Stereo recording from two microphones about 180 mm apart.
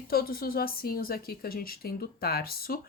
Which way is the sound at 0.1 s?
55° left (ahead or behind).